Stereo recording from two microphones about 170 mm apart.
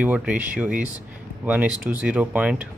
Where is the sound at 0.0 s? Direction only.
10° right (ahead or behind).